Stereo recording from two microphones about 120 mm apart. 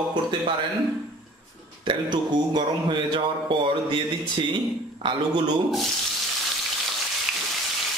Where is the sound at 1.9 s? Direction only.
40° right (ahead or behind).